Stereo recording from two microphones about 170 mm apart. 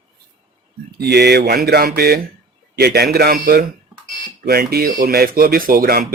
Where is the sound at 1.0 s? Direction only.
75° right (ahead or behind).